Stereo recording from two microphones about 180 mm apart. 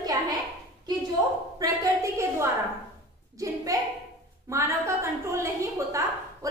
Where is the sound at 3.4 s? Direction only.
20° right (ahead or behind).